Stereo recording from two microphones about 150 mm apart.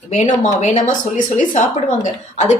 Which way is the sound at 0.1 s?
50° left (ahead or behind).